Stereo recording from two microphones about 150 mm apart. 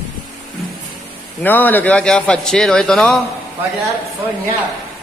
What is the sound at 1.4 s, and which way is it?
A man's voice, 10° left (ahead or behind).